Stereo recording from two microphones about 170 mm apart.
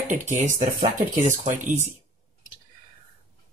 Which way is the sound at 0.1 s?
45° right (ahead or behind).